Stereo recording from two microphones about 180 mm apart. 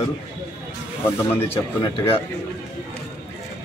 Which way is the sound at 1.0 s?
15° left (ahead or behind).